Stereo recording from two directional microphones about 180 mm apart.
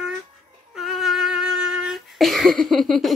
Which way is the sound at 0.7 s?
Centre (ahead or behind).